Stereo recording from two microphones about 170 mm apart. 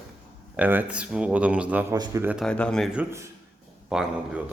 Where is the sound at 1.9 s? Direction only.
20° right (ahead or behind).